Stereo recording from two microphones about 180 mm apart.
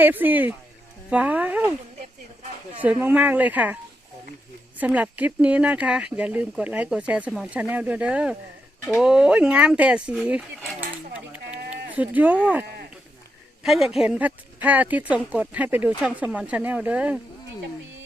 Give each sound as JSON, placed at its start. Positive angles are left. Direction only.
{"t": 0.0, "sound": "speech", "side_deg": -10}
{"t": 2.8, "sound": "speech", "side_deg": -10}
{"t": 4.8, "sound": "speech", "side_deg": -10}
{"t": 11.3, "sound": "sheep", "side_deg": -10}
{"t": 13.6, "sound": "speech", "side_deg": 0}